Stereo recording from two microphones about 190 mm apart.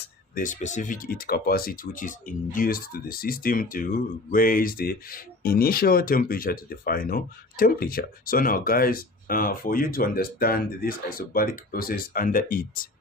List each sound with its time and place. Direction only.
0.3 s speech: 40° left (ahead or behind)